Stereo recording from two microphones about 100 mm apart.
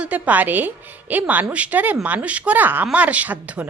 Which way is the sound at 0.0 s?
15° right (ahead or behind).